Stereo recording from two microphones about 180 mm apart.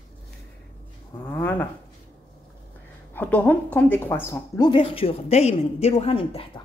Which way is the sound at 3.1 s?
10° left (ahead or behind).